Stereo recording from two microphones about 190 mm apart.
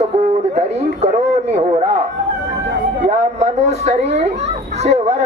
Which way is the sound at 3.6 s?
35° right (ahead or behind).